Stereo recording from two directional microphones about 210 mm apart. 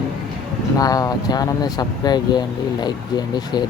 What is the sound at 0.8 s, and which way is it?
Speech, 15° left (ahead or behind).